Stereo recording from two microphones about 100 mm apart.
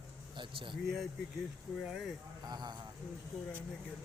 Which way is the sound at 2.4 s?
45° right (ahead or behind).